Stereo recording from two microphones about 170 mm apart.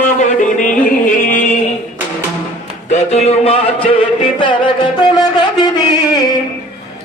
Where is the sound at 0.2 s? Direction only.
50° left (ahead or behind).